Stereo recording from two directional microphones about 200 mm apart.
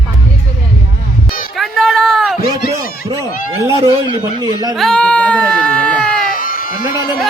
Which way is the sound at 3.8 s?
20° right (ahead or behind).